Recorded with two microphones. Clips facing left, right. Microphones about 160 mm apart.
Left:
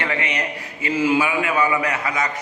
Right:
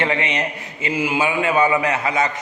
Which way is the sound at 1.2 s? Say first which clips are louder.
Right 2 dB; 25° right (ahead or behind).